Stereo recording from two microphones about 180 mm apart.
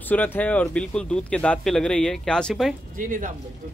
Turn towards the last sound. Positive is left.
turn(degrees=-45)  # may be behind; listen again after turning